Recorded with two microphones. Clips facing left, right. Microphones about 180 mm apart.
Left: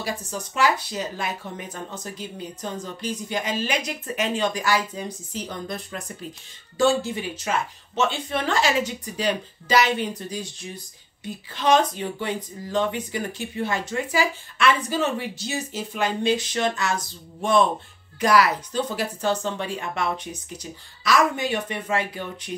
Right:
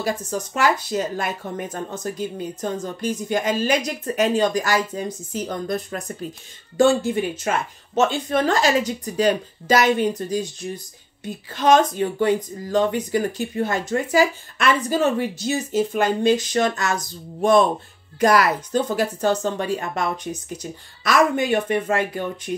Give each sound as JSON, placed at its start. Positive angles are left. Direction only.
{"t": 0.0, "sound": "speech", "side_deg": -45}